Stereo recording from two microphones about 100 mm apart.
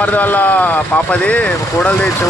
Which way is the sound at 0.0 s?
20° left (ahead or behind).